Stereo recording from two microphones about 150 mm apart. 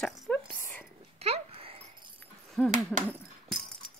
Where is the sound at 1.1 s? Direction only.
45° right (ahead or behind).